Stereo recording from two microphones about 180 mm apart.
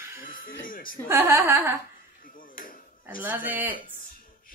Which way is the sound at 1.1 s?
15° right (ahead or behind).